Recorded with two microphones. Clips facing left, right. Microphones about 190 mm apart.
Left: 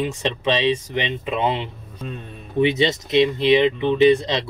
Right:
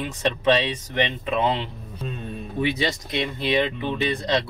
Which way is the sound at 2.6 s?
25° left (ahead or behind).